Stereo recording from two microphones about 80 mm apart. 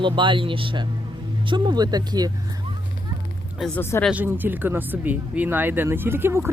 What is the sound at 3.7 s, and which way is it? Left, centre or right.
Speech, left.